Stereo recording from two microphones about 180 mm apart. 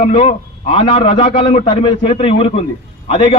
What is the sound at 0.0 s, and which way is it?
A man's voice, 35° left (ahead or behind).